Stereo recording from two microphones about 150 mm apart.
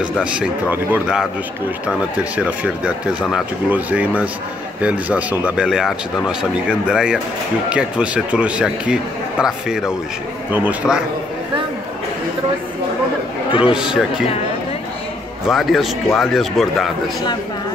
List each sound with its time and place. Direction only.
0.0 s a man's voice: 5° right (ahead or behind)
13.5 s a man's voice: 35° left (ahead or behind)
13.7 s a man's voice: 5° right (ahead or behind)
15.4 s a man's voice: centre (ahead or behind)